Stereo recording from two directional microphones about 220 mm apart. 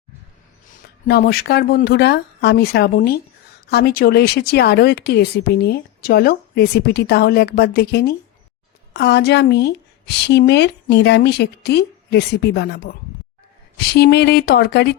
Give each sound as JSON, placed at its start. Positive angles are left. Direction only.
{"t": 1.0, "sound": "speech", "side_deg": 45}